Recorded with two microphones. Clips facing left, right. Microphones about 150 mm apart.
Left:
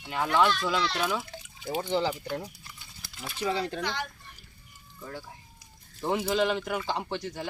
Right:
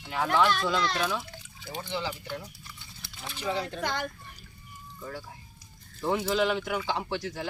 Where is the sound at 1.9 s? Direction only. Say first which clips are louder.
Left 5 dB; 40° left (ahead or behind).